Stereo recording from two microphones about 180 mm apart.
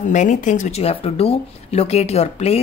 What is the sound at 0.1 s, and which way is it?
Speech, 45° left (ahead or behind).